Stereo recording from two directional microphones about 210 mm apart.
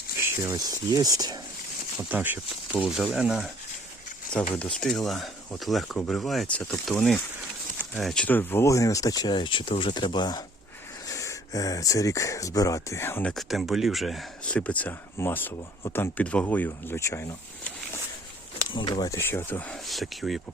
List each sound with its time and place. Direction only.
0.2 s speech: 15° right (ahead or behind)
4.6 s speech: 5° left (ahead or behind)
18.7 s speech: 20° left (ahead or behind); by 20.4 s centre (ahead or behind)